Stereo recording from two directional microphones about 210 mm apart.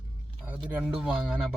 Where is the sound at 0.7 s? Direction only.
5° right (ahead or behind).